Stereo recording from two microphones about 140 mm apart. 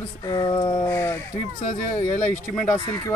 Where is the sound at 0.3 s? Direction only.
30° left (ahead or behind).